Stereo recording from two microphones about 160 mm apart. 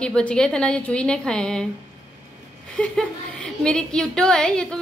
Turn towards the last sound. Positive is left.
turn(degrees=5)  # may be behind; listen again after turning